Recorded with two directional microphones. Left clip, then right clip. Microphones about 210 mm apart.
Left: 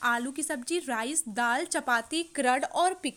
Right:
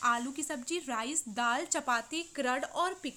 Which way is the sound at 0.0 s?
25° left (ahead or behind).